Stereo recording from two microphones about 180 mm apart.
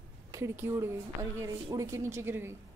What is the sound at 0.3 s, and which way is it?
A woman's voice, 15° right (ahead or behind).